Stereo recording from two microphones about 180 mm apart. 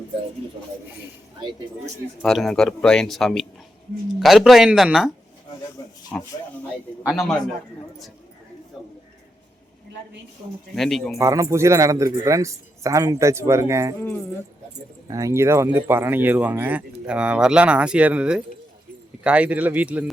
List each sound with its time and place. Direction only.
2.2 s speech: centre (ahead or behind)
10.8 s speech: centre (ahead or behind)
11.2 s speech: 15° right (ahead or behind)
15.0 s speech: 20° right (ahead or behind)